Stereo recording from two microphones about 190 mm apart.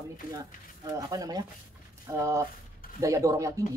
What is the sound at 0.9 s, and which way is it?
Speech, 20° right (ahead or behind).